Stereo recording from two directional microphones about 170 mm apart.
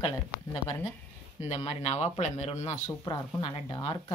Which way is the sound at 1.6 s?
40° left (ahead or behind).